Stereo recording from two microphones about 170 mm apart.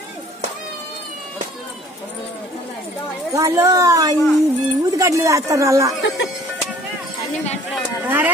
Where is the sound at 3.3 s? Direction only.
20° right (ahead or behind).